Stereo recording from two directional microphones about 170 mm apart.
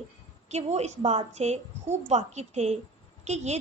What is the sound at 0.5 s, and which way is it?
A woman's voice, 40° right (ahead or behind).